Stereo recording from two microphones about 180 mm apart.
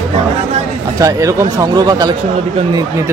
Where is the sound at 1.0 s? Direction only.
15° right (ahead or behind).